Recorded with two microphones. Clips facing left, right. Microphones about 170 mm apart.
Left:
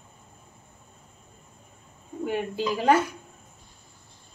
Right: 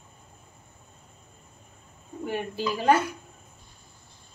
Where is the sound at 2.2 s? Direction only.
20° left (ahead or behind).